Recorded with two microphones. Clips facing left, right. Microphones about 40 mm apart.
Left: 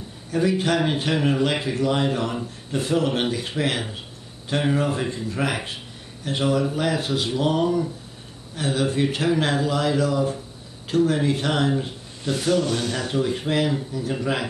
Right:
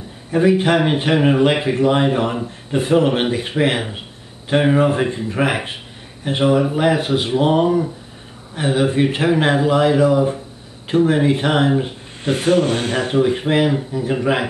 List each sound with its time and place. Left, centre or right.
0.3 s a man's voice: right
12.3 s a man's voice: right